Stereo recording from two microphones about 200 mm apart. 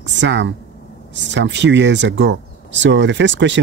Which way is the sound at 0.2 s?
60° right (ahead or behind).